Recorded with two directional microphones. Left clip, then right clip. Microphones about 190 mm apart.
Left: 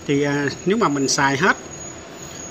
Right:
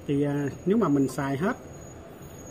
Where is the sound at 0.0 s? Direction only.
Centre (ahead or behind).